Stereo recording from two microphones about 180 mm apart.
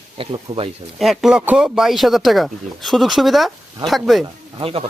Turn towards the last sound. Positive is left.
turn(degrees=-30)  # may be behind; listen again after turning